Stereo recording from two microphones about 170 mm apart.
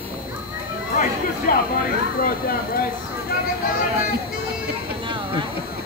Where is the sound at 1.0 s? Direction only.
60° left (ahead or behind).